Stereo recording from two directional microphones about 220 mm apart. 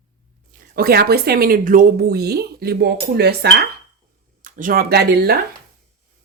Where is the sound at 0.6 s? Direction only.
45° right (ahead or behind).